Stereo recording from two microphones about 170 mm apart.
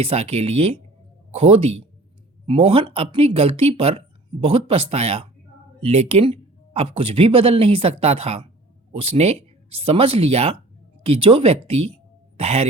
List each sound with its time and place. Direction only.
0.0 s speech: 35° right (ahead or behind)